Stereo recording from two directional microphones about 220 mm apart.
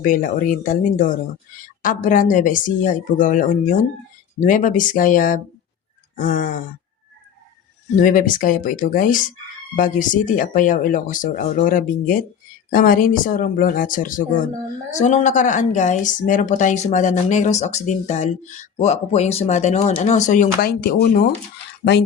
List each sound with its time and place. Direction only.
0.0 s a woman's voice: 35° left (ahead or behind)
7.9 s a woman's voice: 40° left (ahead or behind)